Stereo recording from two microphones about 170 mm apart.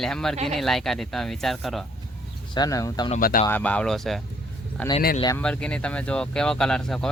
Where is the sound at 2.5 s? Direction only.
20° left (ahead or behind).